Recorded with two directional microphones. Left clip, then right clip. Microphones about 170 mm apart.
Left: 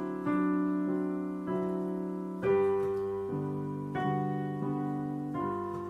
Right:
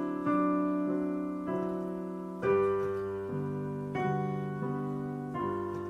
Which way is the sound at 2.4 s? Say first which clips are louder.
Even; 15° right (ahead or behind).